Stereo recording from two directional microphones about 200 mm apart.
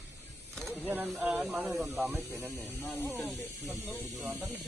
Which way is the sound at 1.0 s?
5° right (ahead or behind).